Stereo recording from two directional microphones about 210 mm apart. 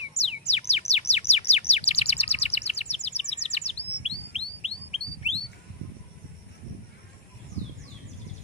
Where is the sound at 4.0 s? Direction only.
30° left (ahead or behind).